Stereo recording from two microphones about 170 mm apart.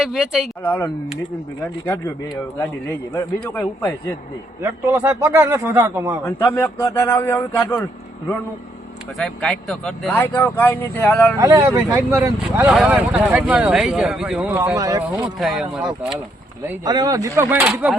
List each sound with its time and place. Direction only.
0.0 s speech: 5° right (ahead or behind)
0.6 s a man's voice: 10° left (ahead or behind)
3.2 s a man's voice: 10° left (ahead or behind)
4.6 s a man's voice: 15° right (ahead or behind)
6.2 s a man's voice: 15° left (ahead or behind)
9.1 s a man's voice: 5° left (ahead or behind)
11.3 s a man's voice: 20° right (ahead or behind); by 14.5 s 5° right (ahead or behind)
14.5 s a man's voice: 15° right (ahead or behind)
15.1 s speech: centre (ahead or behind)
16.8 s speech: 20° right (ahead or behind)
17.5 s a man's voice: 5° right (ahead or behind)